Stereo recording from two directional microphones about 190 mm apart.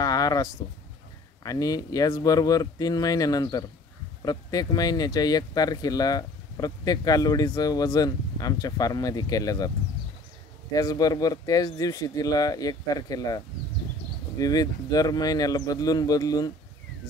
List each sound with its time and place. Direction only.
0.0 s a sound: 20° left (ahead or behind)
1.4 s speech: 20° left (ahead or behind)
10.7 s speech: 20° left (ahead or behind)